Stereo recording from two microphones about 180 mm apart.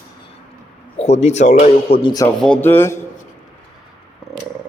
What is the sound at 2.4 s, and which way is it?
Speech, 10° left (ahead or behind).